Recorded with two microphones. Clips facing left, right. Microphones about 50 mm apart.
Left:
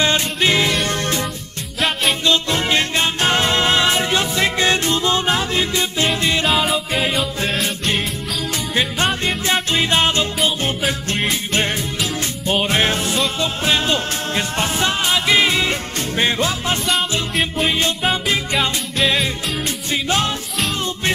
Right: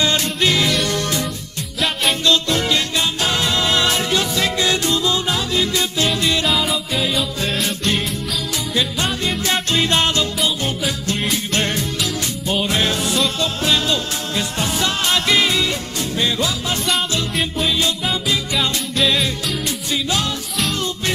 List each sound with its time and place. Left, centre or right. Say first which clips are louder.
0.0 s music: left 1 dB; left
2.2 s music: right 1 dB; left
6.4 s music: left 2 dB; centre
8.7 s music: left 2 dB; left
9.5 s music: left 1 dB; centre
12.4 s music: left 2 dB; left
15.0 s music: left 1 dB; centre
15.4 s music: left 1 dB; left
18.1 s music: left 1 dB; left
18.9 s music: even; centre
19.9 s music: left 2 dB; left